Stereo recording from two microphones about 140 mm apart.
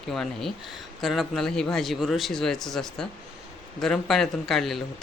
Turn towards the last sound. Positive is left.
turn(degrees=0)  # may be behind; listen again after turning